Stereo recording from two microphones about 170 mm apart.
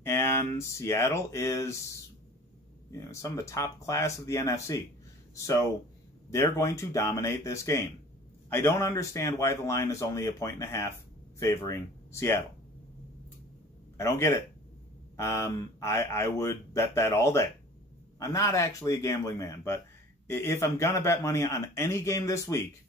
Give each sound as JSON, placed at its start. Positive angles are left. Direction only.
{"t": 0.0, "sound": "speech", "side_deg": 15}
{"t": 3.0, "sound": "a man's voice", "side_deg": 20}
{"t": 13.9, "sound": "a man's voice", "side_deg": 15}